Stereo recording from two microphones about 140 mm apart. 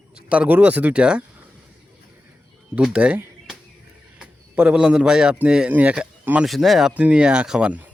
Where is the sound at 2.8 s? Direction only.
5° right (ahead or behind).